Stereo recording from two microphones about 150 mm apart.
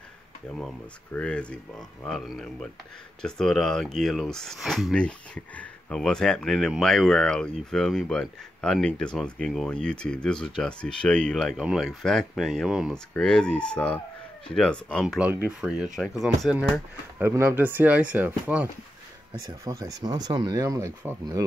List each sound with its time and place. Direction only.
0.6 s speech: 5° left (ahead or behind)
15.1 s speech: 10° right (ahead or behind)
17.2 s speech: 15° right (ahead or behind)
19.4 s speech: 25° right (ahead or behind)